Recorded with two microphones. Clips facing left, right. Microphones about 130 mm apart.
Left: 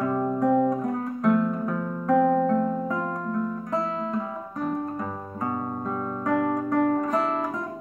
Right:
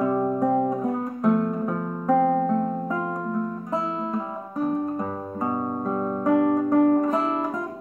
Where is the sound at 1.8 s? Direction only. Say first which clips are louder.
Even; 20° right (ahead or behind).